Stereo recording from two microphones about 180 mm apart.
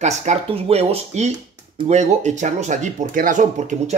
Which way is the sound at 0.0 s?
40° right (ahead or behind).